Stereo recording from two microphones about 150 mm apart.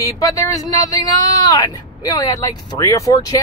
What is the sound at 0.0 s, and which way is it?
Speech, 25° left (ahead or behind).